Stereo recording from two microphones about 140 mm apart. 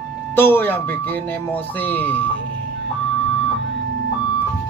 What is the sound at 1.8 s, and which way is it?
Speech, 10° left (ahead or behind).